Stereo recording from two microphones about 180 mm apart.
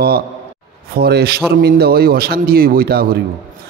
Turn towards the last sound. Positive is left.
turn(degrees=-60)  # may be behind; listen again after turning